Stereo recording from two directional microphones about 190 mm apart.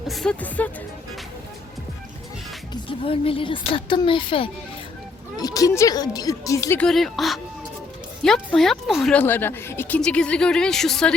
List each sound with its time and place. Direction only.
0.1 s speech: 5° left (ahead or behind)
3.0 s speech: 30° left (ahead or behind)
6.8 s speech: centre (ahead or behind)